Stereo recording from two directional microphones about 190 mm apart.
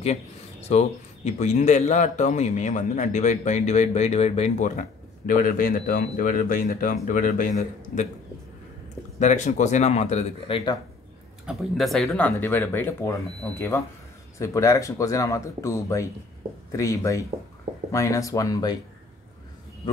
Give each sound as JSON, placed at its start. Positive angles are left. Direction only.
{"t": 0.0, "sound": "speech", "side_deg": 35}
{"t": 9.2, "sound": "speech", "side_deg": 40}
{"t": 11.4, "sound": "speech", "side_deg": 0}